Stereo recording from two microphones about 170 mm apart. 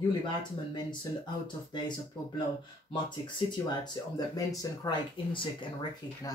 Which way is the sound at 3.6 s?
25° left (ahead or behind).